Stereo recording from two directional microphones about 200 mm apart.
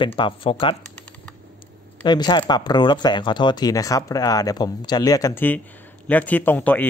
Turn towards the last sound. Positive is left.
turn(degrees=10)  # may be behind; listen again after turning